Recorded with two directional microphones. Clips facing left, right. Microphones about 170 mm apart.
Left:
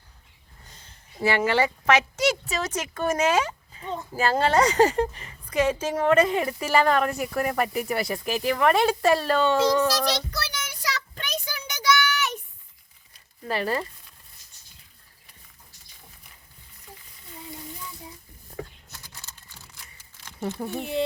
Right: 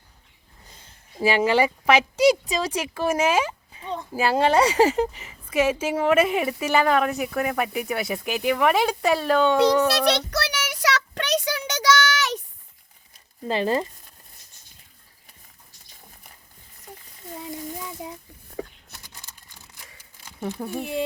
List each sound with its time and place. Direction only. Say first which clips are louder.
1.2 s a woman's voice: right 3 dB; 15° right (ahead or behind)
10.0 s child singing: right 5 dB; 70° right (ahead or behind); by 12.4 s 90° right
13.5 s speech: right 4 dB; 20° right (ahead or behind)
18.0 s a sound: right 8 dB; 75° right (ahead or behind)
18.9 s a sound: even; 15° right (ahead or behind)
20.7 s speech: right 1 dB; 10° right (ahead or behind)